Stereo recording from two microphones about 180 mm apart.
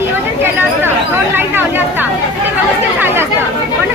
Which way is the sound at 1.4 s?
10° right (ahead or behind).